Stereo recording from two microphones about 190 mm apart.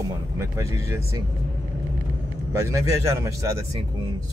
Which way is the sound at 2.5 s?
15° right (ahead or behind).